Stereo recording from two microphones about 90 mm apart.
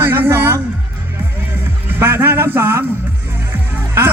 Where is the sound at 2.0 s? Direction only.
25° right (ahead or behind).